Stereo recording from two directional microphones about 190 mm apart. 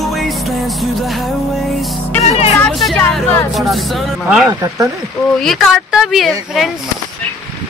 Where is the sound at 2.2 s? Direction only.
35° left (ahead or behind).